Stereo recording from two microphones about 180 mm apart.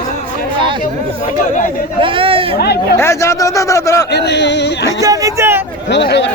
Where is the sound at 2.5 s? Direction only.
60° left (ahead or behind).